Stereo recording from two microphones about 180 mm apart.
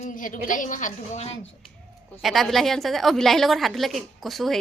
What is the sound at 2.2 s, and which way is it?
A woman's voice, centre (ahead or behind).